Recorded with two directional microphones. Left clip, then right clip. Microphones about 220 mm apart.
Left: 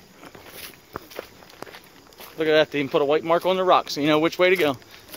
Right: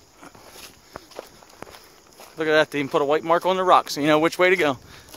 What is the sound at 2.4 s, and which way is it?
Speech, 30° right (ahead or behind).